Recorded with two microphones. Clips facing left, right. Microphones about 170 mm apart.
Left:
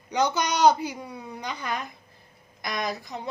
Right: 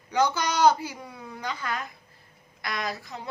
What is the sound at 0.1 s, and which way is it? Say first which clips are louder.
Speech: even; 15° left (ahead or behind).